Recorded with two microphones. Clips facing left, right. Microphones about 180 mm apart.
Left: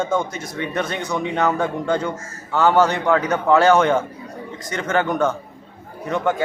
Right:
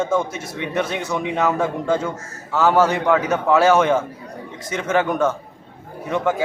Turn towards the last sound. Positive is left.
turn(degrees=-5)  # may be behind; listen again after turning